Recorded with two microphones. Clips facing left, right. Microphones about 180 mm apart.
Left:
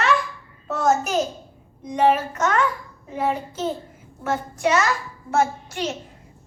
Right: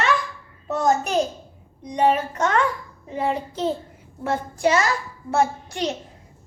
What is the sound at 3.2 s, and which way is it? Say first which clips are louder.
A child's voice: even; 30° right (ahead or behind).